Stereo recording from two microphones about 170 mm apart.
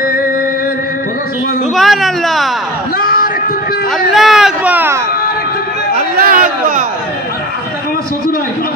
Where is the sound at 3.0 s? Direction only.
65° left (ahead or behind).